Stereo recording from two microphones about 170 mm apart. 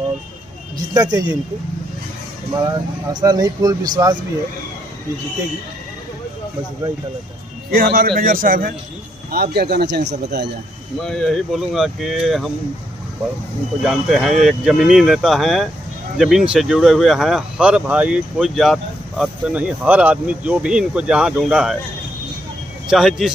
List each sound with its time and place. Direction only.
0.7 s speech: 20° right (ahead or behind)
2.5 s speech: 20° right (ahead or behind)
7.7 s a man's voice: 60° right (ahead or behind); by 10.5 s 75° right (ahead or behind)
11.0 s speech: 5° left (ahead or behind)
13.8 s speech: centre (ahead or behind)
22.8 s speech: centre (ahead or behind)